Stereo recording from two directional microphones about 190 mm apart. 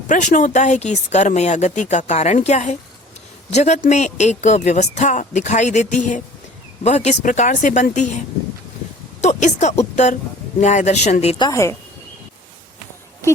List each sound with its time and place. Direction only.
0.1 s a woman's voice: 40° left (ahead or behind)
9.2 s a woman's voice: 40° left (ahead or behind)
11.4 s a woman's voice: 15° left (ahead or behind)